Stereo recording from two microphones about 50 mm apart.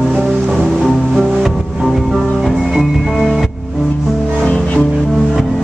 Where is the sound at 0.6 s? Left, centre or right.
Centre.